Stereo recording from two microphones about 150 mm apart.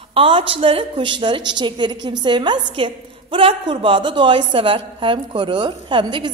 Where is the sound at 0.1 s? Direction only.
40° right (ahead or behind).